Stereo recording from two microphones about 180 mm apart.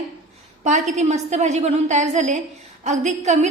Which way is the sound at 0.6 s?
40° right (ahead or behind).